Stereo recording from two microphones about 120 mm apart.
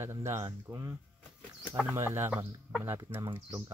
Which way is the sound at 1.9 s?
20° right (ahead or behind).